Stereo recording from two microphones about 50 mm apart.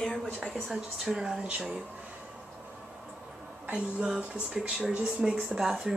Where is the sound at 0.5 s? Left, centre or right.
Centre.